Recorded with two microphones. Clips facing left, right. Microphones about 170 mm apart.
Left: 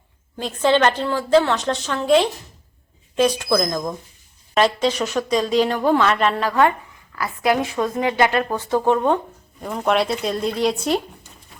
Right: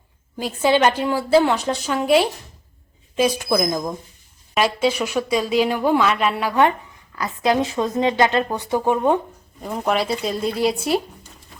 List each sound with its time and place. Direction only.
0.3 s a woman's voice: 10° right (ahead or behind)
8.8 s a woman's voice: 10° right (ahead or behind)